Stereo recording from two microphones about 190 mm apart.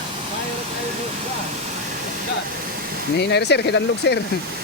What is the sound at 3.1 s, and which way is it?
Speech, 60° left (ahead or behind).